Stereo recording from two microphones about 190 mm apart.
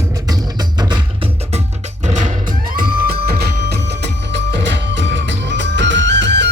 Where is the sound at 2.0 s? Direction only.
35° right (ahead or behind).